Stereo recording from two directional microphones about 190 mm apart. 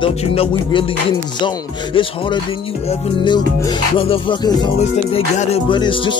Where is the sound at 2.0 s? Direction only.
25° left (ahead or behind).